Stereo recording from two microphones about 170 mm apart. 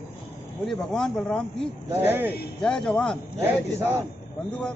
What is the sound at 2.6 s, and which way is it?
Speech, 5° left (ahead or behind).